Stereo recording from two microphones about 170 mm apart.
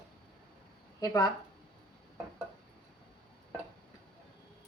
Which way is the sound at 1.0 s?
20° left (ahead or behind).